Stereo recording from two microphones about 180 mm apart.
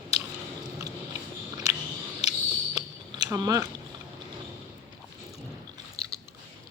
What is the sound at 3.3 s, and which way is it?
Speech, 20° right (ahead or behind).